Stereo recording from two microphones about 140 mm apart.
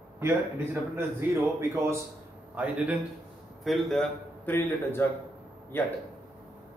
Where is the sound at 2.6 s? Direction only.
10° right (ahead or behind).